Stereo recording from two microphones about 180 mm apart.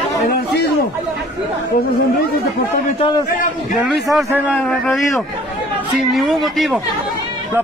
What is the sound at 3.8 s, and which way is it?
Speech, centre (ahead or behind).